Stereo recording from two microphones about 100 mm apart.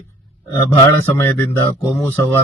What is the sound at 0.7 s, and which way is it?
A man's voice, 25° left (ahead or behind).